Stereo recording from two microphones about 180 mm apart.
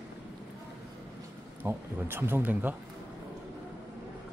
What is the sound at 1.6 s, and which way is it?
Speech, 10° right (ahead or behind).